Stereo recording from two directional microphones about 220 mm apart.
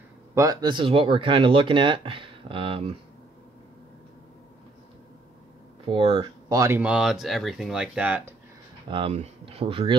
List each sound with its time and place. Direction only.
0.3 s speech: 15° right (ahead or behind)
5.9 s speech: 25° right (ahead or behind); by 8.2 s 5° right (ahead or behind)
8.8 s speech: 25° right (ahead or behind)